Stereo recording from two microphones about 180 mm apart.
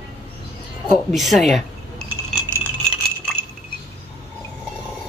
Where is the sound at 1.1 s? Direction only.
Centre (ahead or behind).